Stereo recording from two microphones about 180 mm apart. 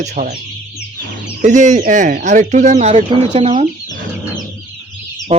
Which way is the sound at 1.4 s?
45° right (ahead or behind).